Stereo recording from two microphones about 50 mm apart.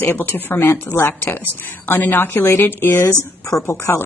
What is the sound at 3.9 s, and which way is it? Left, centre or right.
Speech, left.